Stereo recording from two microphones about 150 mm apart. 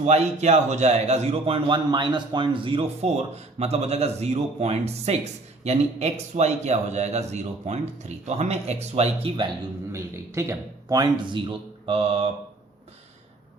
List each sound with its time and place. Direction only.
0.0 s a man's voice: 50° right (ahead or behind)
9.9 s a man's voice: 20° right (ahead or behind); by 12.3 s 40° right (ahead or behind)